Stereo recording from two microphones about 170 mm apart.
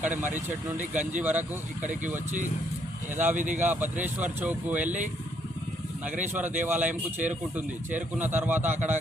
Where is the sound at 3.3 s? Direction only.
50° right (ahead or behind).